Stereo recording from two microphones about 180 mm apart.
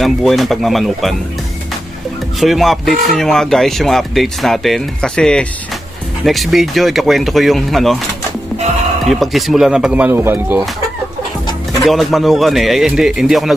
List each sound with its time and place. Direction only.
0.0 s speech: centre (ahead or behind)
2.4 s speech: centre (ahead or behind)
9.0 s speech: centre (ahead or behind)
11.8 s speech: centre (ahead or behind)